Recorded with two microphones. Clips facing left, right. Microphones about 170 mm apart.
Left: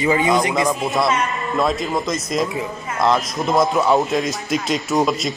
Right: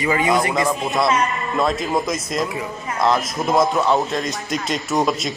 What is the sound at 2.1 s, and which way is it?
A man's voice, centre (ahead or behind).